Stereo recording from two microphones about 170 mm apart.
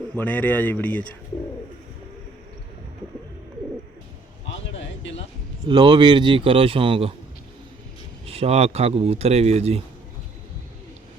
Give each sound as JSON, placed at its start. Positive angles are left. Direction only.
{"t": 0.2, "sound": "speech", "side_deg": 10}
{"t": 4.4, "sound": "a sound", "side_deg": 90}
{"t": 5.6, "sound": "speech", "side_deg": -25}
{"t": 8.3, "sound": "speech", "side_deg": -35}